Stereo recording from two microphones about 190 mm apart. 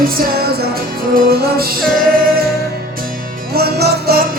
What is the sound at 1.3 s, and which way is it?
Music, 50° right (ahead or behind).